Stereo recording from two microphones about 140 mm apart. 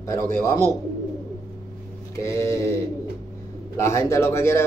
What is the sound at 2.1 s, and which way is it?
Speech, 20° left (ahead or behind).